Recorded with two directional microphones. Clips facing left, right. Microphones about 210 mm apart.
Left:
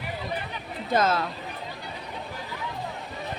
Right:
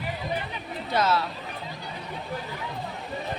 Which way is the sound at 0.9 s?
50° left (ahead or behind).